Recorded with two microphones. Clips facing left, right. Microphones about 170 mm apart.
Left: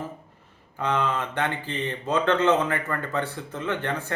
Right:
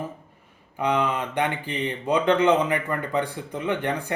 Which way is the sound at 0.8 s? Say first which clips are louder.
Right 2 dB; 15° right (ahead or behind).